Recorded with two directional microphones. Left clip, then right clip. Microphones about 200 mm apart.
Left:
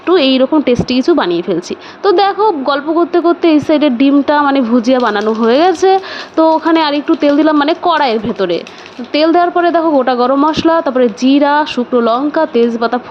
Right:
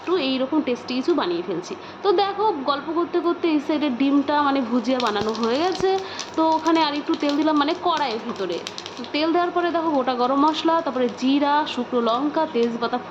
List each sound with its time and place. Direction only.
0.0 s a woman's voice: 40° left (ahead or behind)